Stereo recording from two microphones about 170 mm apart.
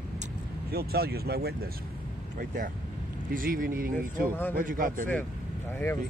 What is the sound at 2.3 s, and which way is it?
A man's voice, 55° right (ahead or behind).